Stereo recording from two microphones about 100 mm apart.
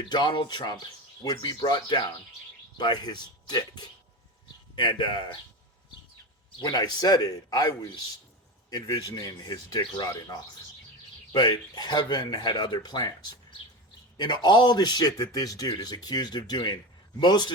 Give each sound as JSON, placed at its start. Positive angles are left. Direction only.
{"t": 0.0, "sound": "a man's voice", "side_deg": 45}
{"t": 6.6, "sound": "a man's voice", "side_deg": 45}
{"t": 9.8, "sound": "a man's voice", "side_deg": 50}
{"t": 10.1, "sound": "a man's voice", "side_deg": 40}
{"t": 14.2, "sound": "a man's voice", "side_deg": 50}